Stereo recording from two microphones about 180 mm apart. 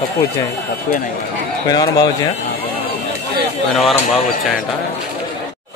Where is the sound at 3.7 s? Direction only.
Centre (ahead or behind).